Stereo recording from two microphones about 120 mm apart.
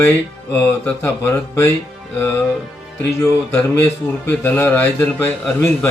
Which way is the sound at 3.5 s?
20° left (ahead or behind).